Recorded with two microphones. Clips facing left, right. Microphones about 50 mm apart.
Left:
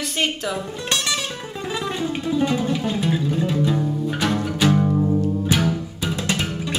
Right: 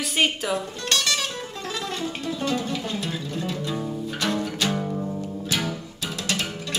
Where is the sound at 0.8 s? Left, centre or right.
Centre.